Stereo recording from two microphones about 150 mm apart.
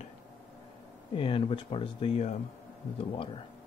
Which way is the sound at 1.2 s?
35° left (ahead or behind).